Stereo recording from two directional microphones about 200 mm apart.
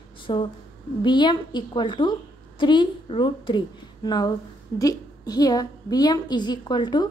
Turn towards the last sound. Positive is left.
turn(degrees=20)  # may be behind; listen again after turning